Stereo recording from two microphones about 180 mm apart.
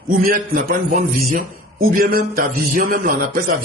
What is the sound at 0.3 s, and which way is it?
Speech, 55° right (ahead or behind).